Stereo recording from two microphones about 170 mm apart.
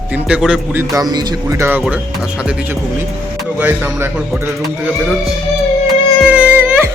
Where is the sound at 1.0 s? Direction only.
25° right (ahead or behind).